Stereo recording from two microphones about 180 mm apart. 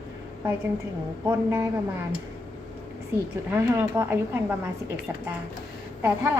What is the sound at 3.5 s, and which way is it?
Speech, 15° right (ahead or behind).